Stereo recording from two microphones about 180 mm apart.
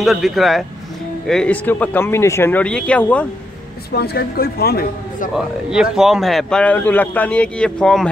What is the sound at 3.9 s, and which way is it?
A man's voice, 60° left (ahead or behind).